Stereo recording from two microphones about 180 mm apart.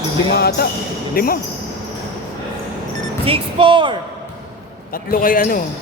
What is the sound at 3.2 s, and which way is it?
Speech, 30° right (ahead or behind).